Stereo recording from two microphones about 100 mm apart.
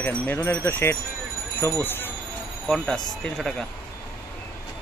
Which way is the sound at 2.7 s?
5° left (ahead or behind).